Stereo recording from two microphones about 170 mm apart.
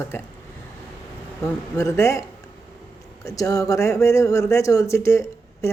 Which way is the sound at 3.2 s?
20° left (ahead or behind).